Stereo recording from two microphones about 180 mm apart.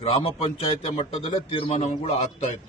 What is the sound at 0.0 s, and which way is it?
A man's voice, 30° left (ahead or behind).